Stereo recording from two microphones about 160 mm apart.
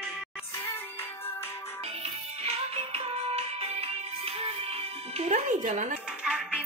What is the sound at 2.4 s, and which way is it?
Music, 40° right (ahead or behind).